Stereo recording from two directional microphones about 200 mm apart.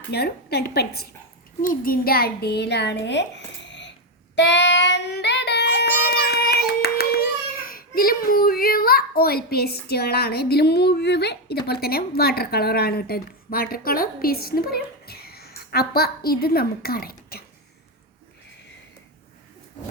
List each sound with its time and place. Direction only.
0.1 s a woman's voice: 55° left (ahead or behind)
4.4 s child singing: 60° left (ahead or behind)